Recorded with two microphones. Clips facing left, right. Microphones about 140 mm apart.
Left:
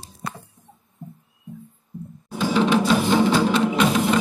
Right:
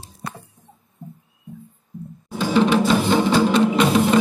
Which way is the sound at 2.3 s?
Centre (ahead or behind).